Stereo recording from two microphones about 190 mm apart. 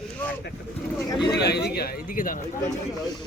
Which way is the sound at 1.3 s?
60° left (ahead or behind).